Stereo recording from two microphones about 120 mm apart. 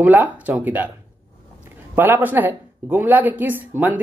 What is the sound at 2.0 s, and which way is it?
Speech, 15° right (ahead or behind).